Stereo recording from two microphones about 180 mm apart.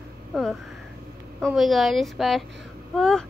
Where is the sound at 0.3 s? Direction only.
Centre (ahead or behind).